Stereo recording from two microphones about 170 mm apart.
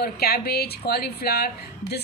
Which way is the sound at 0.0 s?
65° left (ahead or behind).